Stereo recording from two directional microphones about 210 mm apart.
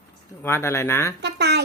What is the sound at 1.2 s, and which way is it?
Speech, 55° right (ahead or behind).